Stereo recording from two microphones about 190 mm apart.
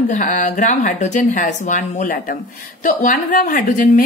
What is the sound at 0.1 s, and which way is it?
A woman's voice, 40° left (ahead or behind).